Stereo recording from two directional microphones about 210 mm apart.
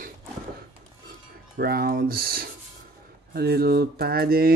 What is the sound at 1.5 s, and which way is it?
Speech, 45° right (ahead or behind).